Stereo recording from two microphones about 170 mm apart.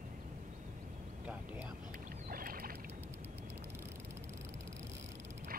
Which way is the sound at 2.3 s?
55° right (ahead or behind).